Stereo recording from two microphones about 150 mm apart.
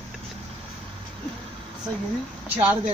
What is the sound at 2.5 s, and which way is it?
Speech, 10° right (ahead or behind).